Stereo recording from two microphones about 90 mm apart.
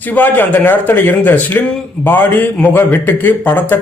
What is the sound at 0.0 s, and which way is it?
A man's voice, 20° left (ahead or behind).